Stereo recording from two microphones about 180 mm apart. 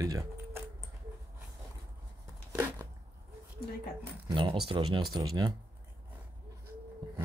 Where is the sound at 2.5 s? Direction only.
10° right (ahead or behind).